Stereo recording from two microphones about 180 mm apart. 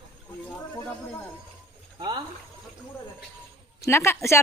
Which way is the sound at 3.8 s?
15° left (ahead or behind).